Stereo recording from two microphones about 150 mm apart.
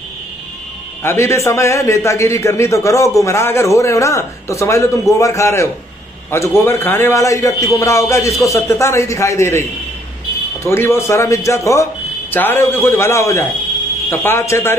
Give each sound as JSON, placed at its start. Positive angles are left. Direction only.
{"t": 1.0, "sound": "a man's voice", "side_deg": 20}